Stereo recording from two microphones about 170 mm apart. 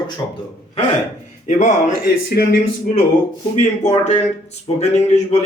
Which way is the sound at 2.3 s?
60° left (ahead or behind).